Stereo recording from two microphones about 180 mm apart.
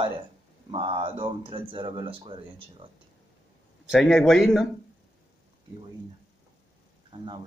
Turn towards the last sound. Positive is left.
turn(degrees=-25)  # may be behind; listen again after turning